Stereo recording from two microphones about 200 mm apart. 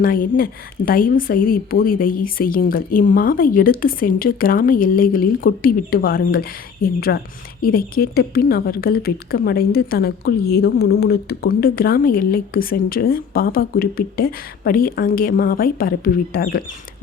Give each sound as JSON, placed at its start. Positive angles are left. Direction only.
{"t": 0.0, "sound": "a woman's voice", "side_deg": 45}